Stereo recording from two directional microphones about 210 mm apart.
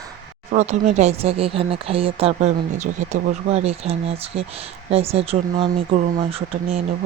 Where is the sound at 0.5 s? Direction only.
35° right (ahead or behind).